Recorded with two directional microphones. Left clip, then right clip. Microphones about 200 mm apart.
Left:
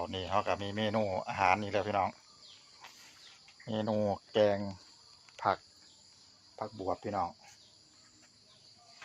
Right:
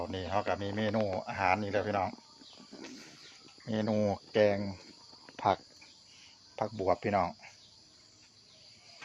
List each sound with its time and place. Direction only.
0.0 s speech: 5° right (ahead or behind)
3.7 s speech: 15° right (ahead or behind)
6.6 s cricket: 50° right (ahead or behind)